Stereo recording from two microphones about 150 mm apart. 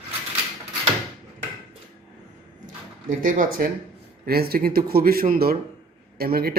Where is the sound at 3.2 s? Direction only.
65° right (ahead or behind).